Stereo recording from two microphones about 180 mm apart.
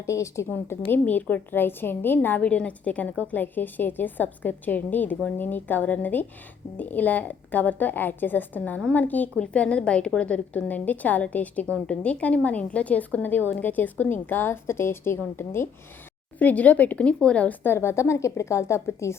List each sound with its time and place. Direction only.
0.0 s a woman's voice: 15° left (ahead or behind)